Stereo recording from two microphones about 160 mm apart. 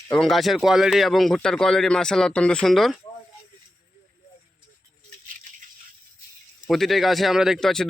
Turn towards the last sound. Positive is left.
turn(degrees=5)  # may be behind; listen again after turning